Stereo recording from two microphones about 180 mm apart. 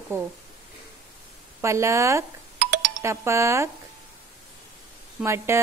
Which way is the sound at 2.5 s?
50° right (ahead or behind).